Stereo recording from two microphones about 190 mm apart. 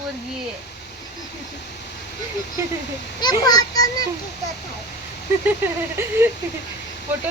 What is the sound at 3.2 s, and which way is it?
Speech, 20° left (ahead or behind).